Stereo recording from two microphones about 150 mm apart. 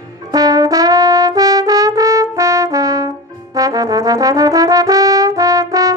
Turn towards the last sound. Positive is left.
turn(degrees=-25)  # may be behind; listen again after turning